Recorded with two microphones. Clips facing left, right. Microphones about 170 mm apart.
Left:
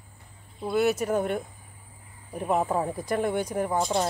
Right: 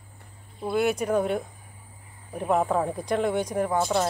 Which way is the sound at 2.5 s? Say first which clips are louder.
Right 2 dB; 5° left (ahead or behind).